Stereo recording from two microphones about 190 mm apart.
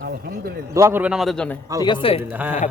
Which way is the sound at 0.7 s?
15° right (ahead or behind).